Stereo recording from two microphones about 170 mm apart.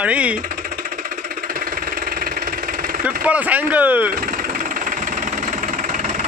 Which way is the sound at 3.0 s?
10° right (ahead or behind).